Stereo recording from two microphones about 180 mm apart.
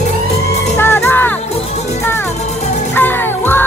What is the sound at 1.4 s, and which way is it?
Music, 35° left (ahead or behind).